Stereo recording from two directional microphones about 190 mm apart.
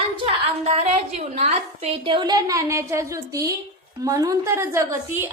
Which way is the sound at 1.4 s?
35° right (ahead or behind).